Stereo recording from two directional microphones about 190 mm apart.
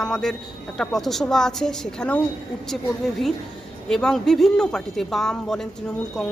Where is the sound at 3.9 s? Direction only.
5° left (ahead or behind).